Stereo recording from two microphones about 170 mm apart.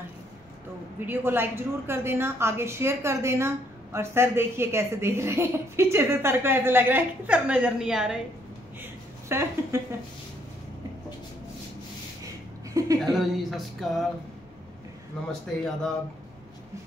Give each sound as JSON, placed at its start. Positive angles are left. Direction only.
{"t": 0.9, "sound": "a woman's voice", "side_deg": -10}
{"t": 9.3, "sound": "a woman's voice", "side_deg": -15}
{"t": 12.7, "sound": "a sound", "side_deg": -20}
{"t": 13.0, "sound": "speech", "side_deg": 0}